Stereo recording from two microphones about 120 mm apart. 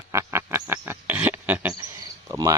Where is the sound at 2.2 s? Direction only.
30° right (ahead or behind).